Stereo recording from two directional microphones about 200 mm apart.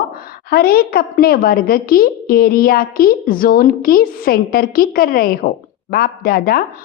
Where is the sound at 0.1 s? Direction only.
50° left (ahead or behind).